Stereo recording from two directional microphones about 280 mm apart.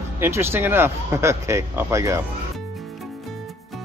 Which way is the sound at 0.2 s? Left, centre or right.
Centre.